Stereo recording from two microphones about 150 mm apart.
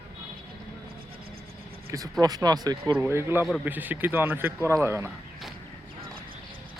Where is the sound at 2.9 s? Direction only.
15° right (ahead or behind).